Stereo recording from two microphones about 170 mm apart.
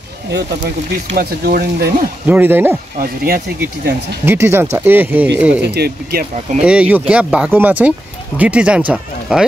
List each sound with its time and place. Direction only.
1.1 s speech: 65° right (ahead or behind)
2.2 s speech: 10° right (ahead or behind)
3.0 s speech: 60° right (ahead or behind)
4.3 s speech: 15° right (ahead or behind)
5.6 s speech: 70° right (ahead or behind)
6.6 s speech: 5° right (ahead or behind)